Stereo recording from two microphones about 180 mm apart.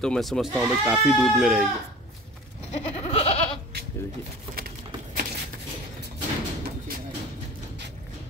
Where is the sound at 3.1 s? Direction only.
35° left (ahead or behind).